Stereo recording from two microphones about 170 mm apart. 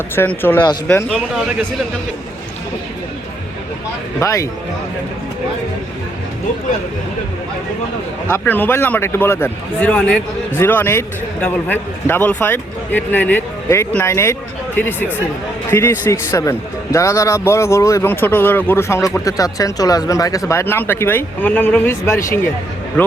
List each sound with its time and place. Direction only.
0.2 s a man's voice: 10° left (ahead or behind)
4.2 s a man's voice: 20° left (ahead or behind)
8.3 s a man's voice: 10° left (ahead or behind)